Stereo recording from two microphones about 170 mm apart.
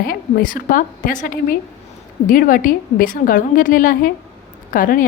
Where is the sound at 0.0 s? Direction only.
60° left (ahead or behind).